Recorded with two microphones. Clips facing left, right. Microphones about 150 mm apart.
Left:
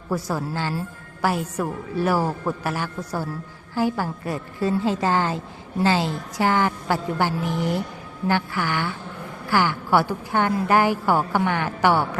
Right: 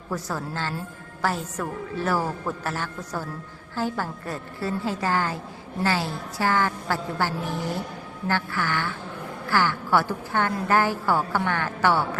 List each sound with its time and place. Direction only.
0.1 s a woman's voice: 10° left (ahead or behind)